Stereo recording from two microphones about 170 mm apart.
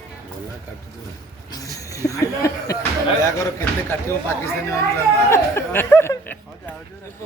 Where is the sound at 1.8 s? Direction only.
20° left (ahead or behind).